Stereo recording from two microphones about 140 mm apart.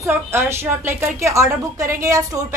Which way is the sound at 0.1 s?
15° right (ahead or behind).